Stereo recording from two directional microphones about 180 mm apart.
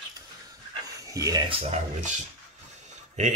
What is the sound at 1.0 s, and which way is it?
Speech, 20° right (ahead or behind).